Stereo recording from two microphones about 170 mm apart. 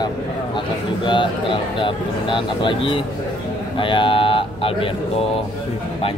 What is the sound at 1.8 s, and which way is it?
Speech, 30° left (ahead or behind).